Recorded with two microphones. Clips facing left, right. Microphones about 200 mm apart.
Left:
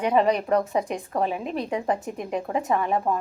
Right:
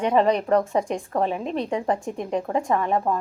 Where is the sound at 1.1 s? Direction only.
30° right (ahead or behind).